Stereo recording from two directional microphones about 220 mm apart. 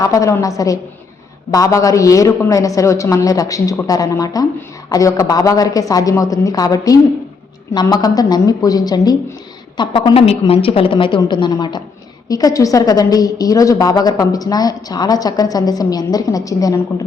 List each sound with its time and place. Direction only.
0.0 s a woman's voice: 15° left (ahead or behind)